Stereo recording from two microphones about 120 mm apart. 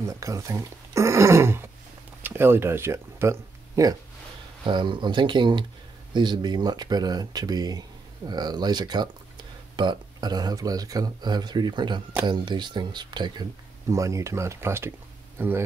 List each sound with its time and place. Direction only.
0.0 s speech: 25° right (ahead or behind)
4.6 s speech: 40° right (ahead or behind)
13.8 s speech: 25° right (ahead or behind)